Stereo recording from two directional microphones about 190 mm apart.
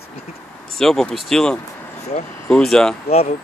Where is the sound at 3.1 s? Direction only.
35° left (ahead or behind).